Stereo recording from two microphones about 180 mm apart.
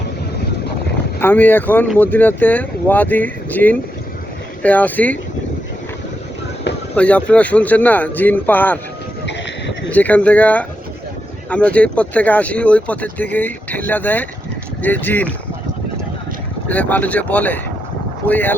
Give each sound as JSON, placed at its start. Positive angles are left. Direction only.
{"t": 1.2, "sound": "speech", "side_deg": 10}
{"t": 6.9, "sound": "speech", "side_deg": 5}
{"t": 9.2, "sound": "a sound", "side_deg": 75}
{"t": 9.9, "sound": "speech", "side_deg": 10}
{"t": 16.6, "sound": "speech", "side_deg": 10}